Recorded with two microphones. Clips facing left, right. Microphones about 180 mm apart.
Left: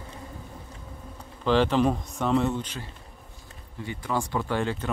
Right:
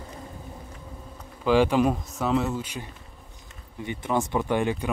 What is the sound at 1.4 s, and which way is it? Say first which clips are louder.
Speech: right 2 dB; 10° right (ahead or behind).